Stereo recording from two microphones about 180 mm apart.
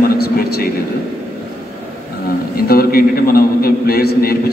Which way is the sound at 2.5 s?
55° left (ahead or behind).